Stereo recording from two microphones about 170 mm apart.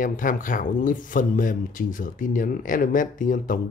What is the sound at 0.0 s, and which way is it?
Speech, 50° left (ahead or behind).